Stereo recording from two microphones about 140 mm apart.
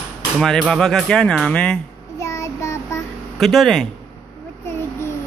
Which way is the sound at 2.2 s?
20° left (ahead or behind).